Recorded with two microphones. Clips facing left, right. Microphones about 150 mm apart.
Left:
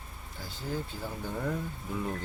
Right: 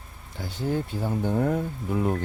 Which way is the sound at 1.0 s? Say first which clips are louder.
Right 12 dB; 65° right (ahead or behind).